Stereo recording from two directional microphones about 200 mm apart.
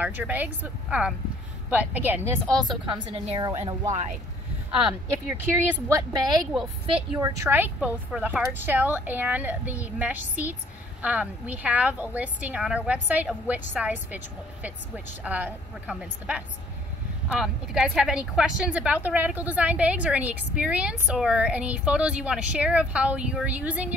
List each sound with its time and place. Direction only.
0.0 s a woman's voice: 10° right (ahead or behind)
2.4 s speech: centre (ahead or behind)
2.9 s a woman's voice: 25° right (ahead or behind)
5.7 s a woman's voice: 15° right (ahead or behind)
7.2 s a woman's voice: 15° right (ahead or behind)